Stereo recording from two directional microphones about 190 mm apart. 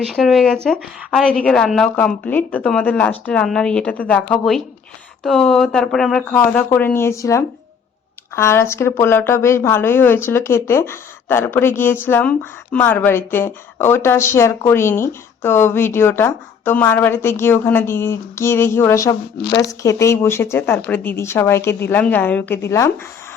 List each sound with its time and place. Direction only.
0.1 s a woman's voice: centre (ahead or behind)
19.4 s speech: 65° left (ahead or behind)
19.8 s a woman's voice: 15° left (ahead or behind)